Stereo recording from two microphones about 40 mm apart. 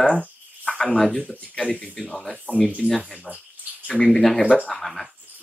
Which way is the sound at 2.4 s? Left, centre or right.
Left.